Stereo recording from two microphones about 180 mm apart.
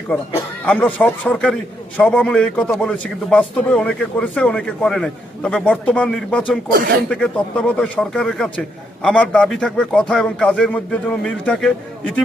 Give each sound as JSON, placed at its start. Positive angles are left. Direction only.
{"t": 0.6, "sound": "a man's voice", "side_deg": 10}